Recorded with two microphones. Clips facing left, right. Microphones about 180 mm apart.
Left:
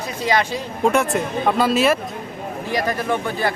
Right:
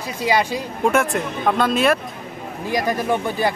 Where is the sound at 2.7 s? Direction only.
15° right (ahead or behind).